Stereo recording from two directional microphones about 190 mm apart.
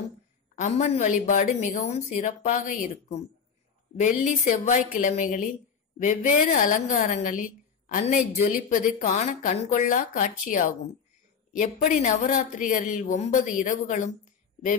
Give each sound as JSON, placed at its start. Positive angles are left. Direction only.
{"t": 0.6, "sound": "a woman's voice", "side_deg": 40}